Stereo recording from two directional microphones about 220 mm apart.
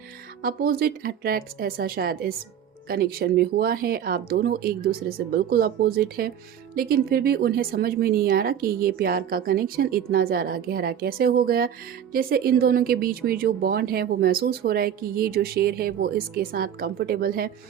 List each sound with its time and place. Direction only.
0.4 s speech: 40° right (ahead or behind)